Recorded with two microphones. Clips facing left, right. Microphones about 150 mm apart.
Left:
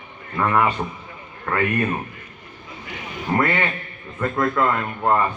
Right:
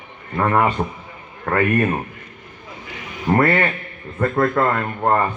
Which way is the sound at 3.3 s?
45° right (ahead or behind).